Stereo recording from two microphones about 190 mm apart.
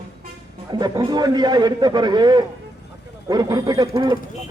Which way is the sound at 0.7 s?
20° right (ahead or behind).